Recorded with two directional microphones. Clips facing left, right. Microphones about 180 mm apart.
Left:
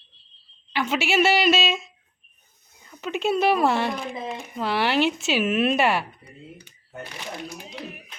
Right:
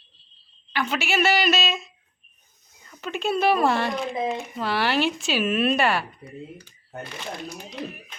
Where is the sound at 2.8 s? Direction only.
15° left (ahead or behind).